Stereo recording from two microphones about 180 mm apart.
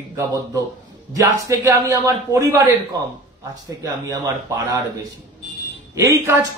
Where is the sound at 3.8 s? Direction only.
20° right (ahead or behind).